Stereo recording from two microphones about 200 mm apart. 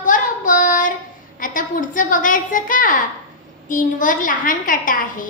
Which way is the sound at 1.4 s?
40° left (ahead or behind).